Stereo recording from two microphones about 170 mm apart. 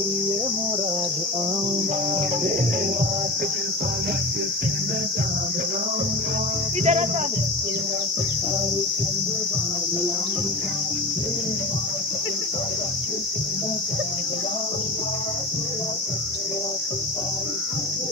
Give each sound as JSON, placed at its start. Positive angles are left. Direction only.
{"t": 6.8, "sound": "cricket", "side_deg": -40}